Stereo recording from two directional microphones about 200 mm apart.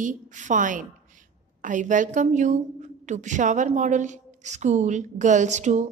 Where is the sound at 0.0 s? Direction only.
40° right (ahead or behind).